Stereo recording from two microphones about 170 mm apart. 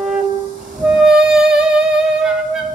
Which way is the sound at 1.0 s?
5° right (ahead or behind).